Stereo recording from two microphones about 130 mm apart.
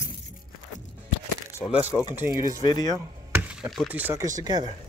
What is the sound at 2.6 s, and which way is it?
Speech, 30° left (ahead or behind).